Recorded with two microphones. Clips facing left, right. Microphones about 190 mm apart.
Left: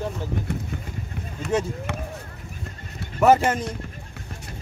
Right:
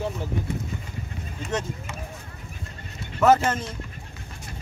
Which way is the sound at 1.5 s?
10° left (ahead or behind).